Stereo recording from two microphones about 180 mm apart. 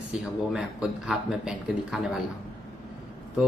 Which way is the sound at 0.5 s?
5° right (ahead or behind).